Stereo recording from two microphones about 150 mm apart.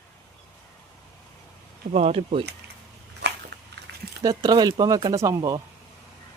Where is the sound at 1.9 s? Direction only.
45° right (ahead or behind).